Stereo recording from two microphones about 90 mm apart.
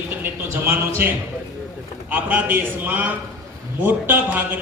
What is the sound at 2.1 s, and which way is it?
A man's voice, 20° right (ahead or behind).